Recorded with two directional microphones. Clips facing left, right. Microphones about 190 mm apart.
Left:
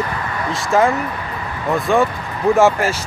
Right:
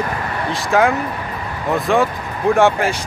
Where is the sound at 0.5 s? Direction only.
Centre (ahead or behind).